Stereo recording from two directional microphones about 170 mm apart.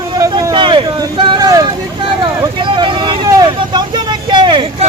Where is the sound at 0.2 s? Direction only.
20° right (ahead or behind).